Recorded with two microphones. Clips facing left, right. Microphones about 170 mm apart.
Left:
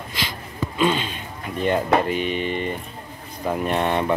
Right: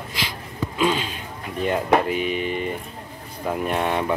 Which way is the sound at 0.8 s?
5° right (ahead or behind).